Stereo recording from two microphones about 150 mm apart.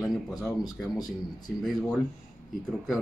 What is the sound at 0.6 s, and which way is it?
Speech, 25° left (ahead or behind).